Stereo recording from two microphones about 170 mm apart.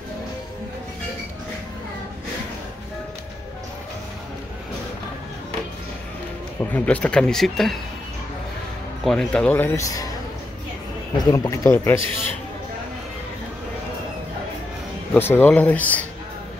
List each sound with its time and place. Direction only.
6.6 s speech: 10° left (ahead or behind)
9.0 s a man's voice: 5° left (ahead or behind); by 10.1 s 20° left (ahead or behind)
11.2 s a man's voice: 15° left (ahead or behind)
15.1 s a man's voice: 10° left (ahead or behind)